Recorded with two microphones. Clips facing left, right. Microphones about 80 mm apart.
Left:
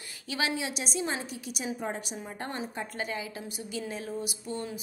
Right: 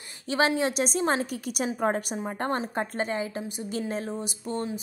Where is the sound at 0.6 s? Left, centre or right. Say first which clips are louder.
Right 7 dB; right.